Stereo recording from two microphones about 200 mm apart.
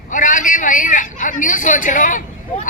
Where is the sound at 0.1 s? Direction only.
40° left (ahead or behind).